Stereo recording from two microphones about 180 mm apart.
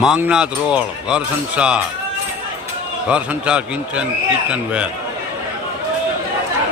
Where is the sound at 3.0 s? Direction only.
5° right (ahead or behind).